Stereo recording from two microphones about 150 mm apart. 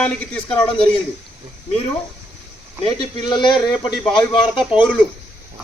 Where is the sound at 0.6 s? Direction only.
35° left (ahead or behind).